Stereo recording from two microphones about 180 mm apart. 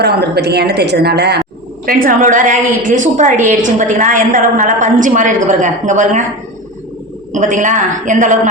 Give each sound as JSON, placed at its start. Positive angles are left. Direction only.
{"t": 0.0, "sound": "a woman's voice", "side_deg": -65}
{"t": 1.9, "sound": "a woman's voice", "side_deg": -50}
{"t": 7.3, "sound": "a woman's voice", "side_deg": -45}